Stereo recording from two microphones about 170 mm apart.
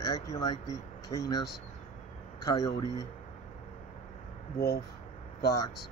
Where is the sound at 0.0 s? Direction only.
20° left (ahead or behind).